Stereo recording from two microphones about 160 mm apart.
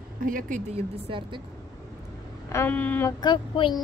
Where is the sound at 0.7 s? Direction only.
35° right (ahead or behind).